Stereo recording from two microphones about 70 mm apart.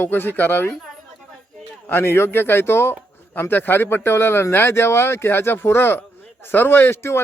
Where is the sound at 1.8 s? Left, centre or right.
Left.